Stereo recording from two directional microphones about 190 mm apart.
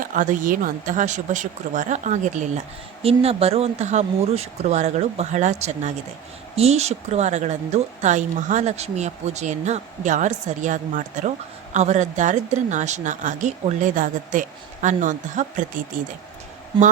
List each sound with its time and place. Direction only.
0.0 s speech: 45° right (ahead or behind)